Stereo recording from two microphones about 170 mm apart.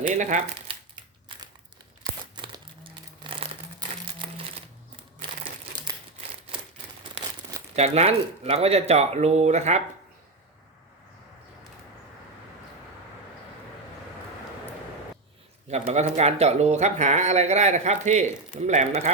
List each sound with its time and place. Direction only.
0.0 s speech: 45° right (ahead or behind)
0.7 s a sound: 25° right (ahead or behind)
2.3 s crumpling: 30° right (ahead or behind)
5.7 s crumpling: 25° right (ahead or behind)
7.8 s speech: 40° right (ahead or behind)
15.9 s speech: 40° right (ahead or behind)